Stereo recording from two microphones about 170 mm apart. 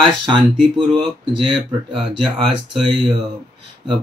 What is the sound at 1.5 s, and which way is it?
Speech, centre (ahead or behind).